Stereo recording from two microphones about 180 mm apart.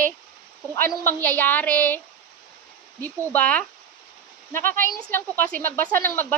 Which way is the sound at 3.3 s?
10° left (ahead or behind).